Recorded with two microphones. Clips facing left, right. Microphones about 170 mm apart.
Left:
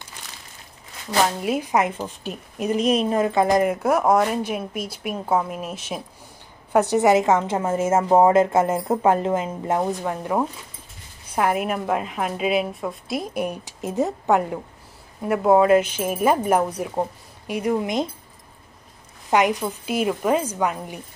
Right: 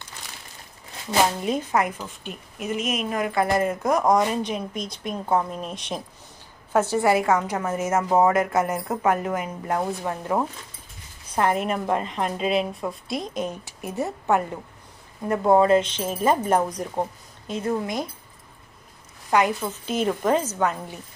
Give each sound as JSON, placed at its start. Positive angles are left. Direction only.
{"t": 1.4, "sound": "a woman's voice", "side_deg": 5}
{"t": 1.7, "sound": "a woman's voice", "side_deg": 25}
{"t": 2.2, "sound": "a woman's voice", "side_deg": 35}
{"t": 6.7, "sound": "a woman's voice", "side_deg": 15}
{"t": 10.0, "sound": "a woman's voice", "side_deg": 10}
{"t": 19.3, "sound": "a woman's voice", "side_deg": 20}